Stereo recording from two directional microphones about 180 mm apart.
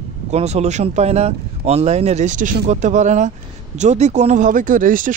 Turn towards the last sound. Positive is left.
turn(degrees=-50)  # may be behind; listen again after turning